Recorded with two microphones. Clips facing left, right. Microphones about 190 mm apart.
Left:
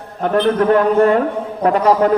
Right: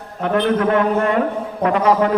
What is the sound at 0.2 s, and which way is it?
A man's voice, 40° left (ahead or behind).